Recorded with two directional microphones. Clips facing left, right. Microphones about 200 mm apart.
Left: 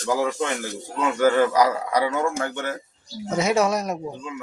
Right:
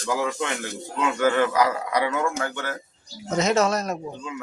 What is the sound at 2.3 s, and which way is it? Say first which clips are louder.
A child's voice: left 2 dB; 20° left (ahead or behind).